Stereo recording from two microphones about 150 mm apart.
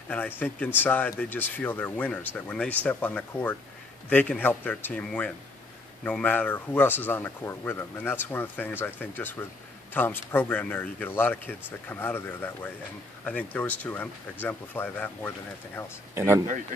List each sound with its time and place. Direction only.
0.4 s speech: 10° left (ahead or behind)
16.2 s speech: 20° right (ahead or behind)